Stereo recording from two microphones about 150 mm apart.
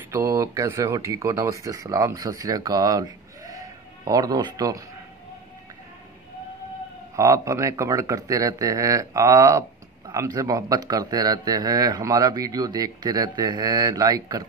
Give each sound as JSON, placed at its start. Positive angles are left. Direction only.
{"t": 0.1, "sound": "speech", "side_deg": -20}
{"t": 7.2, "sound": "speech", "side_deg": -20}